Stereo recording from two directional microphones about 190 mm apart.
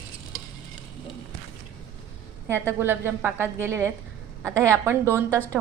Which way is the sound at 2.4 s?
10° right (ahead or behind).